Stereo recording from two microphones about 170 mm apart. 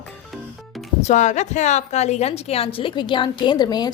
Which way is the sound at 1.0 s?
45° left (ahead or behind).